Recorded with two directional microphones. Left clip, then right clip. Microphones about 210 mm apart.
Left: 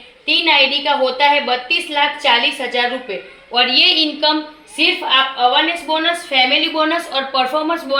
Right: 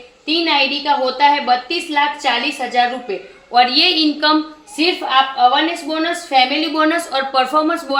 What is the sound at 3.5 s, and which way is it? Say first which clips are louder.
Speech: even; 25° right (ahead or behind).